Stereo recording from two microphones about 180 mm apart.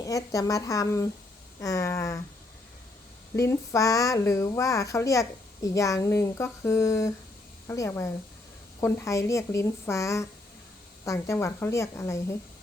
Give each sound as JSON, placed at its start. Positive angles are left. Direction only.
{"t": 0.0, "sound": "a woman's voice", "side_deg": 20}
{"t": 3.3, "sound": "a woman's voice", "side_deg": 15}